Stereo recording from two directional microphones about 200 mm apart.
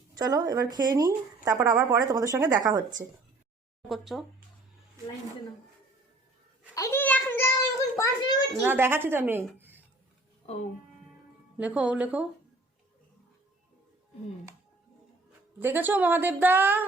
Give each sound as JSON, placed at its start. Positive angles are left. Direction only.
{"t": 0.2, "sound": "speech", "side_deg": -20}
{"t": 3.8, "sound": "speech", "side_deg": 0}
{"t": 6.7, "sound": "a sound", "side_deg": 15}
{"t": 8.6, "sound": "speech", "side_deg": -10}
{"t": 9.6, "sound": "a sound", "side_deg": -10}
{"t": 11.5, "sound": "speech", "side_deg": -5}
{"t": 15.6, "sound": "speech", "side_deg": -10}